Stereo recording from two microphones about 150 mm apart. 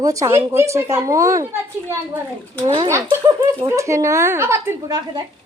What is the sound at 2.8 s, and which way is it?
A woman's voice, 20° right (ahead or behind).